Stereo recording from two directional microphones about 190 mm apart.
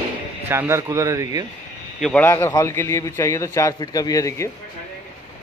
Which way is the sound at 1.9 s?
5° left (ahead or behind).